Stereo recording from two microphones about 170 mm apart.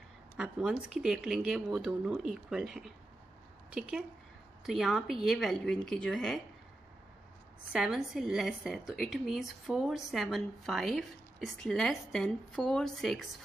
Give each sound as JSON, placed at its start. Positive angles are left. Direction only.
{"t": 0.4, "sound": "a woman's voice", "side_deg": -5}
{"t": 4.6, "sound": "a woman's voice", "side_deg": 0}
{"t": 7.7, "sound": "a woman's voice", "side_deg": -5}